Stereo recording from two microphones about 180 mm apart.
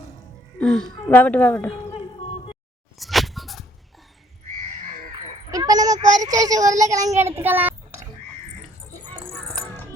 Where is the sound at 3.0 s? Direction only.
Centre (ahead or behind).